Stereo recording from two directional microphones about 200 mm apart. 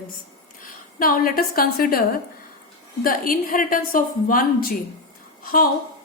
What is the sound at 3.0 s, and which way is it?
A woman's voice, 45° left (ahead or behind).